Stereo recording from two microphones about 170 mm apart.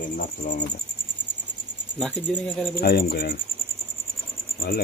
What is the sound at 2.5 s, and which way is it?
Speech, 10° left (ahead or behind).